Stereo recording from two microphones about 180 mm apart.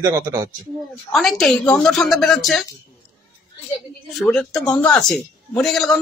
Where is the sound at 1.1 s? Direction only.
Centre (ahead or behind).